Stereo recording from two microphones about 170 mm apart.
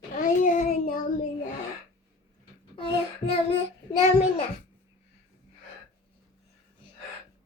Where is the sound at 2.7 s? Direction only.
35° left (ahead or behind).